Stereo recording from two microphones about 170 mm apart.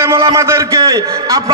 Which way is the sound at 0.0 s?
15° right (ahead or behind).